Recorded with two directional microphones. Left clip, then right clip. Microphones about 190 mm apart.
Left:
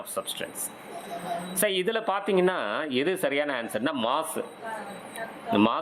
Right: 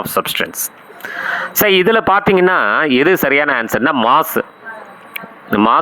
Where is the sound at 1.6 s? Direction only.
30° right (ahead or behind).